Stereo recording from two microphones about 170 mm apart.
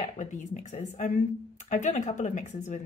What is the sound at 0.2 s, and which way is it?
Speech, 45° left (ahead or behind).